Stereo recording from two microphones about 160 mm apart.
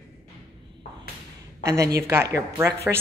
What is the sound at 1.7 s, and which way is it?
A woman's voice, 20° right (ahead or behind).